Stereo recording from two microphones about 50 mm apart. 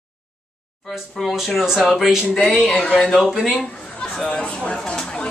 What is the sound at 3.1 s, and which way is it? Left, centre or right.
Speech, centre.